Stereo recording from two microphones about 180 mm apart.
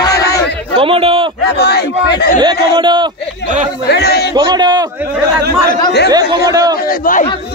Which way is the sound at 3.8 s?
65° left (ahead or behind).